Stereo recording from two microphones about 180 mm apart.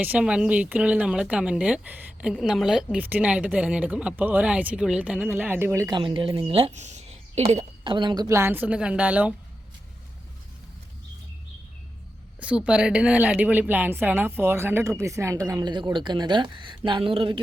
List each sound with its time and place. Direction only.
0.0 s speech: 5° right (ahead or behind)
6.0 s speech: 30° right (ahead or behind); by 9.3 s 10° right (ahead or behind)
12.4 s speech: 5° right (ahead or behind); by 17.4 s 30° right (ahead or behind)